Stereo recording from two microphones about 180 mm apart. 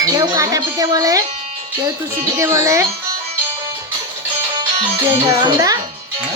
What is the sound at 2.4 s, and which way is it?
Speech, 15° right (ahead or behind).